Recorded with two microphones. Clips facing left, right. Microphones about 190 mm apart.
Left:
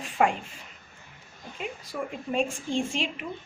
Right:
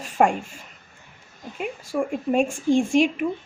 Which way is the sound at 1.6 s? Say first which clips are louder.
Right 8 dB; 50° right (ahead or behind).